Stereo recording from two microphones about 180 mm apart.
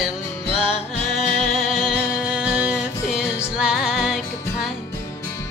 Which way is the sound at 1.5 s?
Centre (ahead or behind).